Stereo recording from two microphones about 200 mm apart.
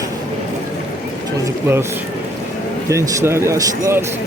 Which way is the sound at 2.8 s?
15° right (ahead or behind).